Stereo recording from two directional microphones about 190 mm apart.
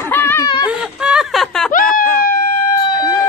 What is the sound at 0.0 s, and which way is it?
Snicker, 10° left (ahead or behind).